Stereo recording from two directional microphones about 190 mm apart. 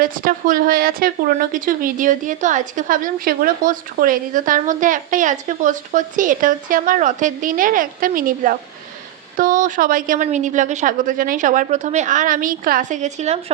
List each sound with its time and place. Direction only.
0.0 s a woman's voice: 45° right (ahead or behind)